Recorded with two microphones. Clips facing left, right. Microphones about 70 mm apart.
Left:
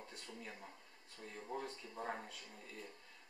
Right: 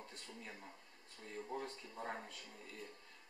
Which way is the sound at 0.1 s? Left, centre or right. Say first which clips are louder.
Left 1 dB; centre.